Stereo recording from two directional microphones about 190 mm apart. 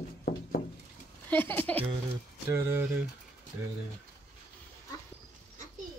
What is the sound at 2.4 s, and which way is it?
Speech, 10° right (ahead or behind).